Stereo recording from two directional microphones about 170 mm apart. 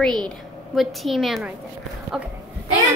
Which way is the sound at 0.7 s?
Centre (ahead or behind).